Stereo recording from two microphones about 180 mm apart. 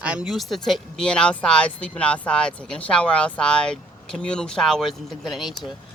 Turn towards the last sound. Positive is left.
turn(degrees=0)  # may be behind; listen again after turning